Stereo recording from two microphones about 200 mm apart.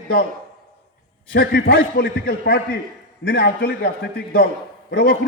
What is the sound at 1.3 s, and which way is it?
A man's voice, 55° left (ahead or behind).